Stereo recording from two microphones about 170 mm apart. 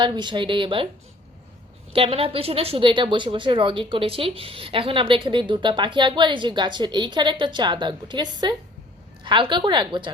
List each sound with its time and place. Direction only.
0.0 s a woman's voice: 25° right (ahead or behind)
1.9 s a woman's voice: 35° right (ahead or behind)